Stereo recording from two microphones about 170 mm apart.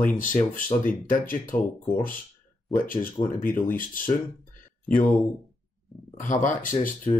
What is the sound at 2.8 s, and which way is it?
Speech, 55° left (ahead or behind).